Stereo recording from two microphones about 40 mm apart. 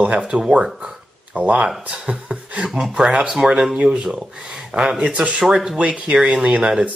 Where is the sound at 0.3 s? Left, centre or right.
Right.